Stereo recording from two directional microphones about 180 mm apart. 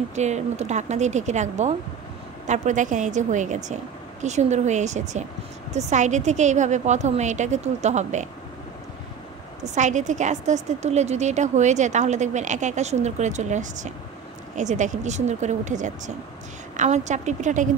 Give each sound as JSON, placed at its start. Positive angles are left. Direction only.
{"t": 0.1, "sound": "a woman's voice", "side_deg": -40}
{"t": 9.6, "sound": "a woman's voice", "side_deg": -40}